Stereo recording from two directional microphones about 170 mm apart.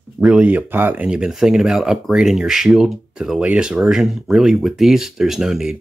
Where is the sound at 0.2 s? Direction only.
5° right (ahead or behind).